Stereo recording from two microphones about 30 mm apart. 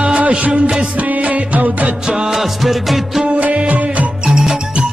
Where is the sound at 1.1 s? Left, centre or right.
Right.